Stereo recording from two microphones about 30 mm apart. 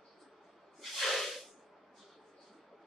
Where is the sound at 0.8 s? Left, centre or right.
Centre.